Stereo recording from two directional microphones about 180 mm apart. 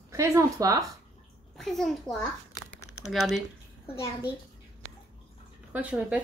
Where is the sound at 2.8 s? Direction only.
15° left (ahead or behind).